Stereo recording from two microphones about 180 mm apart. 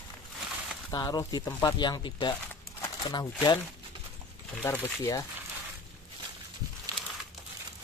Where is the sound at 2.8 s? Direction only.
25° left (ahead or behind).